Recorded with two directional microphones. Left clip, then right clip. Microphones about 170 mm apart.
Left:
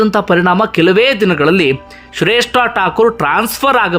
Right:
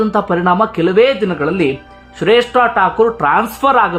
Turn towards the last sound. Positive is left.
turn(degrees=10)  # may be behind; listen again after turning